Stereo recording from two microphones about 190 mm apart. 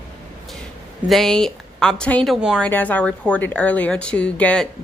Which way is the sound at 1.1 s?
Centre (ahead or behind).